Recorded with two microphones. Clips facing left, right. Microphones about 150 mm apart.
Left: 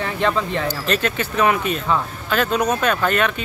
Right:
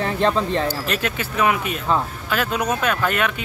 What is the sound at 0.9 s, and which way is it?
Speech, 10° right (ahead or behind).